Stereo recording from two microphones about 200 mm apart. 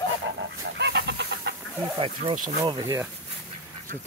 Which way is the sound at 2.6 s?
20° right (ahead or behind).